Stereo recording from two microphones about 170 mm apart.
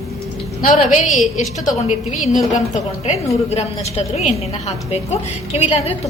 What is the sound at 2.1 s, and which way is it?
A woman's voice, 45° left (ahead or behind).